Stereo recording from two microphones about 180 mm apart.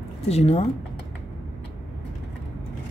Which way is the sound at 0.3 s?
35° left (ahead or behind).